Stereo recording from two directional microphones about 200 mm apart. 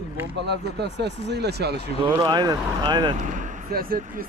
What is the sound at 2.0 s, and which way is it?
Speech, 20° right (ahead or behind).